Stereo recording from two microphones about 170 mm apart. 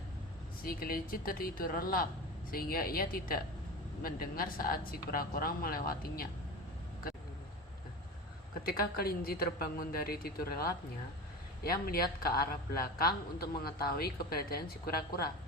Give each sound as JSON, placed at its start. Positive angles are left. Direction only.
{"t": 0.6, "sound": "a man's voice", "side_deg": 60}
{"t": 8.6, "sound": "a man's voice", "side_deg": 60}